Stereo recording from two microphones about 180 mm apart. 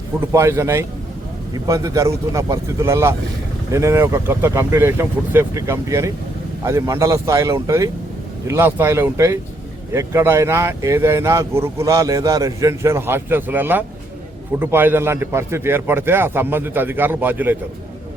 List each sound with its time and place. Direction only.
0.3 s speech: 15° right (ahead or behind)